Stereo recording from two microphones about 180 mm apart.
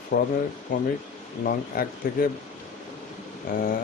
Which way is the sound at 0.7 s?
50° left (ahead or behind).